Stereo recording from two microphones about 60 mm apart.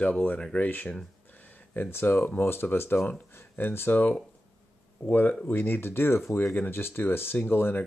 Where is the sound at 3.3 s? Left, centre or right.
Left.